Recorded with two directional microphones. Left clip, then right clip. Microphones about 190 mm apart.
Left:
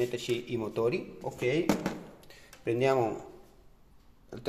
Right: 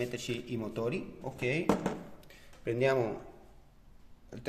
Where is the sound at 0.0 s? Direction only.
10° left (ahead or behind).